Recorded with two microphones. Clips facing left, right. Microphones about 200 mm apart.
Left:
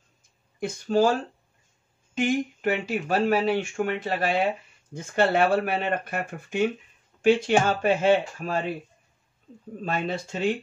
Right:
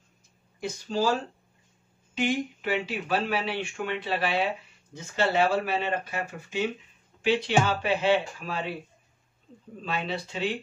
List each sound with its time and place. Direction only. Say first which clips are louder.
0.6 s speech: left 6 dB; 55° left (ahead or behind)
2.1 s speech: left 3 dB; 50° left (ahead or behind)
9.8 s speech: left 3 dB; 50° left (ahead or behind)